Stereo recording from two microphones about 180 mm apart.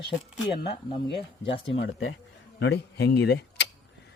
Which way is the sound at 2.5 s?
65° left (ahead or behind).